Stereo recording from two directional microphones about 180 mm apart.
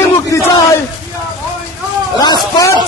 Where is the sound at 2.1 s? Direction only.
25° left (ahead or behind).